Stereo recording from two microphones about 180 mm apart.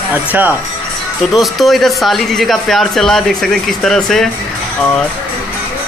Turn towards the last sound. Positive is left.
turn(degrees=5)  # may be behind; listen again after turning